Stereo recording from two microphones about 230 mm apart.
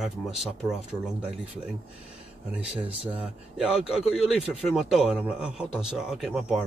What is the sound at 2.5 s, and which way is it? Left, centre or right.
Speech, right.